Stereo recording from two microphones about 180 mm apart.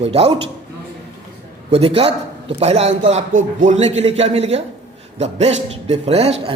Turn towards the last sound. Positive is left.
turn(degrees=-35)  # may be behind; listen again after turning